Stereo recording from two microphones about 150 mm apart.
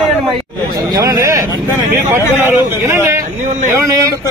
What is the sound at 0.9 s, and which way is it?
A man's voice, 20° right (ahead or behind).